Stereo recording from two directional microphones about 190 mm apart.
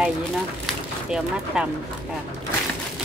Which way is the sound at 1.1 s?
5° right (ahead or behind).